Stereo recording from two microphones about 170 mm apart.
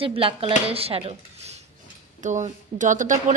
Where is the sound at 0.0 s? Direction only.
30° right (ahead or behind).